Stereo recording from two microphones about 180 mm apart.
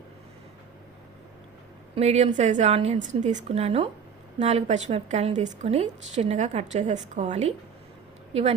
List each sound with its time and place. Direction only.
2.0 s a woman's voice: 40° right (ahead or behind)